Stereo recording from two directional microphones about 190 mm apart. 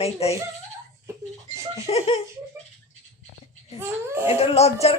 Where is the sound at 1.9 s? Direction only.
30° left (ahead or behind).